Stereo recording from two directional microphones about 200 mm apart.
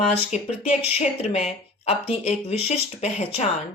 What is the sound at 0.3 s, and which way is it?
Speech, 35° left (ahead or behind).